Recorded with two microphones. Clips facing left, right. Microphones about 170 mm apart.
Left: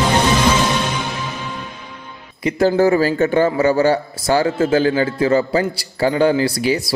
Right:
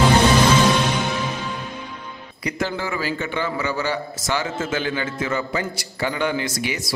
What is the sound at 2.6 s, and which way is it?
A man's voice, 40° left (ahead or behind).